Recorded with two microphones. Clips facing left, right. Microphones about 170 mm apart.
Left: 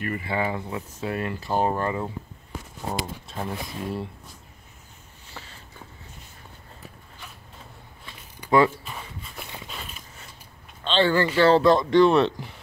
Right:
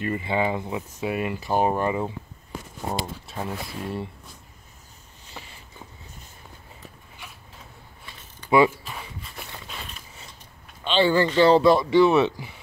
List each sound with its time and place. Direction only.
0.0 s speech: 20° right (ahead or behind)
3.3 s speech: centre (ahead or behind)
5.3 s a sound: 15° right (ahead or behind)
8.5 s speech: 10° right (ahead or behind)
8.8 s walk: centre (ahead or behind)
9.7 s a sound: centre (ahead or behind)
10.8 s speech: 10° right (ahead or behind)